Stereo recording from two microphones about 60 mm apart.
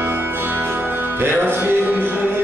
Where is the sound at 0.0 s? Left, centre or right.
Right.